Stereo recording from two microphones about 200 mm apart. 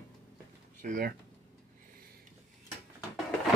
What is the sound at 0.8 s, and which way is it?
Speech, 40° right (ahead or behind).